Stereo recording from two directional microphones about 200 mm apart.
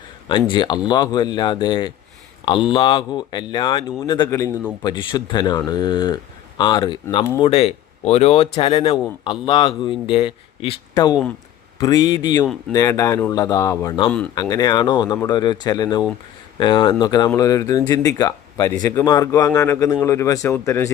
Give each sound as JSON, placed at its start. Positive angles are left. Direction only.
{"t": 0.3, "sound": "speech", "side_deg": 25}